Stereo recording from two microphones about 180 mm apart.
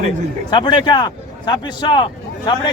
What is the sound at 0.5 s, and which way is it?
A man's voice, 25° left (ahead or behind).